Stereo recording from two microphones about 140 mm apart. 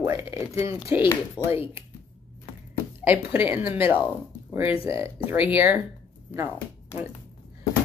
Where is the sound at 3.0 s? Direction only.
15° right (ahead or behind).